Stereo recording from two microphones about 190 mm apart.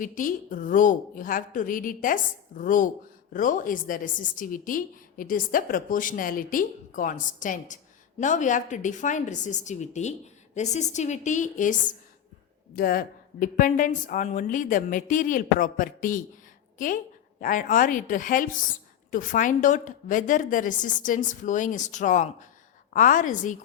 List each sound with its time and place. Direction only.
0.0 s a woman's voice: 45° left (ahead or behind)